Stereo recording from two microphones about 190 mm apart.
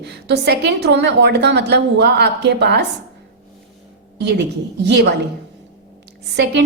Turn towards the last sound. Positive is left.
turn(degrees=-65)  # may be behind; listen again after turning